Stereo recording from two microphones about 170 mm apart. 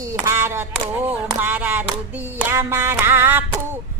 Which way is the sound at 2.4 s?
15° right (ahead or behind).